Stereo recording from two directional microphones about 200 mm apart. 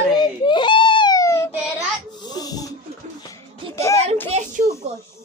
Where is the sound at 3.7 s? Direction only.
15° left (ahead or behind).